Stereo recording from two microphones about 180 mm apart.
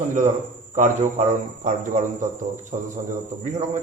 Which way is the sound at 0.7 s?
45° right (ahead or behind).